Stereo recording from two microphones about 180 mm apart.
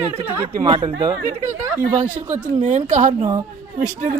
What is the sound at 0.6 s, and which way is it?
Speech, 25° right (ahead or behind).